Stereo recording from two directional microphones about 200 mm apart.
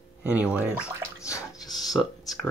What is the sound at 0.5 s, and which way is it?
Speech, 5° right (ahead or behind).